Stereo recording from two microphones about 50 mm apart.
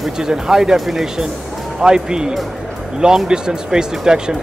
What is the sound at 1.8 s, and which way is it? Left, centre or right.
Speech, centre.